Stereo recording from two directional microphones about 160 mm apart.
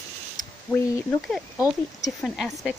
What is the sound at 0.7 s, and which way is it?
Speech, 10° right (ahead or behind).